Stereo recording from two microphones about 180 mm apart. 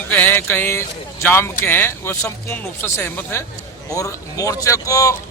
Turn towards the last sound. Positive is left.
turn(degrees=20)  # may be behind; listen again after turning